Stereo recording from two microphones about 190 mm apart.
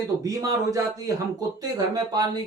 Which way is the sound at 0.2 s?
20° right (ahead or behind).